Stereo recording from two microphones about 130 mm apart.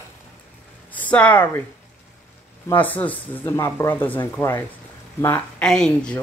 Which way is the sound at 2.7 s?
15° left (ahead or behind).